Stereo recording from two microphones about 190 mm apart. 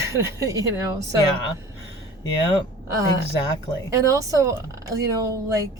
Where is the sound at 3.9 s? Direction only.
15° right (ahead or behind).